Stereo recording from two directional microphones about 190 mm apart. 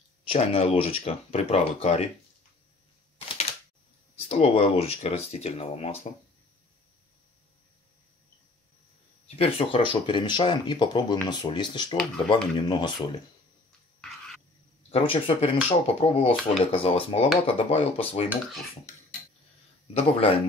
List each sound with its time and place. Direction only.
0.3 s speech: 30° left (ahead or behind)
4.3 s speech: 30° left (ahead or behind)
9.4 s speech: 30° left (ahead or behind)
13.7 s a sound: centre (ahead or behind)
14.9 s speech: 30° left (ahead or behind)
19.9 s speech: 30° left (ahead or behind)